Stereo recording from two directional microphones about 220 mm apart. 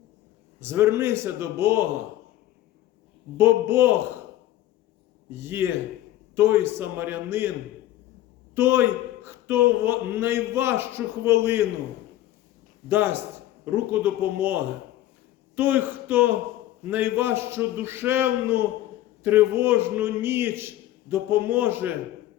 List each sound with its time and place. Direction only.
0.6 s a man's voice: 10° right (ahead or behind)
3.3 s a man's voice: 10° right (ahead or behind)
5.3 s a man's voice: 10° right (ahead or behind)
8.5 s a man's voice: 10° right (ahead or behind)
12.9 s a man's voice: 10° right (ahead or behind)